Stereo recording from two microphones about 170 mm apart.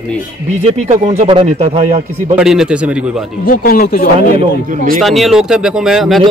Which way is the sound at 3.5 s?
60° left (ahead or behind).